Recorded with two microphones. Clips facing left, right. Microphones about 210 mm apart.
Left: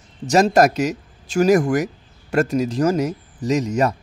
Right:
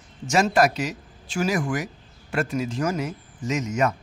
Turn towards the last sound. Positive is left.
turn(degrees=35)  # may be behind; listen again after turning